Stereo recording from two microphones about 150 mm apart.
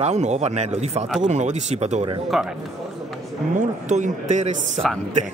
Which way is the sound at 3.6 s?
55° right (ahead or behind).